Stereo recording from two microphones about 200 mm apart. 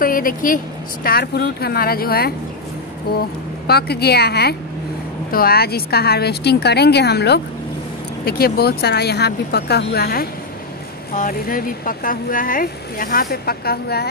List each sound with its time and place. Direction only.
0.0 s speech: 45° left (ahead or behind)